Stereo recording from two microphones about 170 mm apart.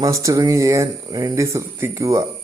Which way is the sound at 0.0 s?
20° right (ahead or behind).